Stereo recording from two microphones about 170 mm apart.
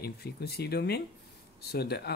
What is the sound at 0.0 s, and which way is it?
Speech, 70° left (ahead or behind).